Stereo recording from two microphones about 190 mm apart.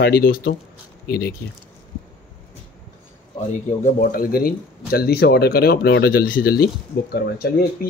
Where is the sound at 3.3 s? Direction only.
45° left (ahead or behind).